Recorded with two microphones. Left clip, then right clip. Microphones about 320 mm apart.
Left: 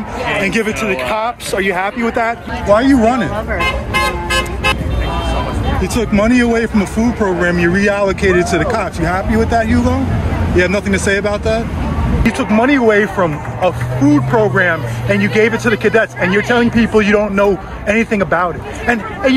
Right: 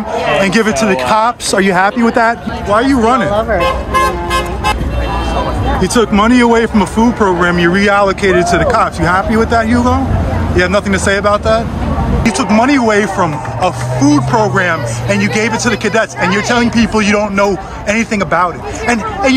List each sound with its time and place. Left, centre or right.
0.4 s speech: centre
0.9 s speech: right
2.7 s speech: centre
5.9 s speech: centre